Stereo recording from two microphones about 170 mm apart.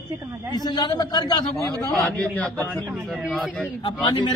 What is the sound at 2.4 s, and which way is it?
A woman's voice, 5° left (ahead or behind).